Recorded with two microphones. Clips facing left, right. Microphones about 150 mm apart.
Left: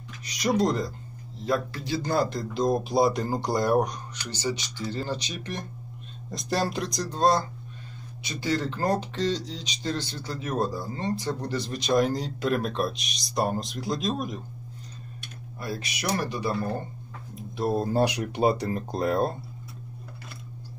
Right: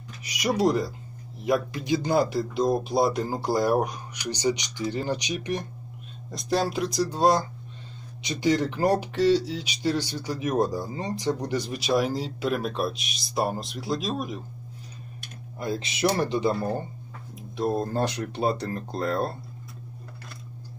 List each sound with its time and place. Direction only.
0.2 s speech: 10° right (ahead or behind)
6.3 s speech: centre (ahead or behind)
15.6 s speech: 25° right (ahead or behind)
17.4 s speech: centre (ahead or behind)